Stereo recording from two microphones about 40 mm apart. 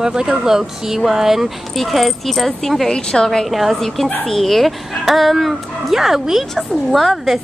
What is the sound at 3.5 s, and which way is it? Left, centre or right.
Speech, centre.